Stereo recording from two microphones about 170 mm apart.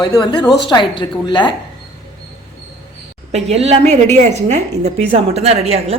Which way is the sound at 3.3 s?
40° right (ahead or behind).